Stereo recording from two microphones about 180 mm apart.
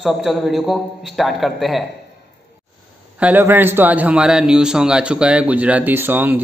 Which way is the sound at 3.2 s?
10° right (ahead or behind).